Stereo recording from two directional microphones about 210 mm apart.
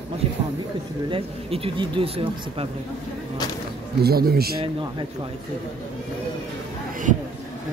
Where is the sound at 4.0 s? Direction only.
45° right (ahead or behind).